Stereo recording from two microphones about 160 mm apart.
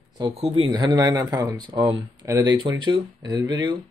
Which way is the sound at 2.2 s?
20° right (ahead or behind).